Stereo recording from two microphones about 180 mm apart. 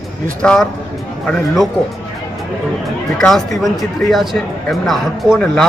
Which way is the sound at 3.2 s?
Centre (ahead or behind).